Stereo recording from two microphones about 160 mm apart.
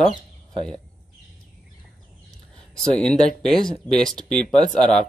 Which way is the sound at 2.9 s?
5° left (ahead or behind).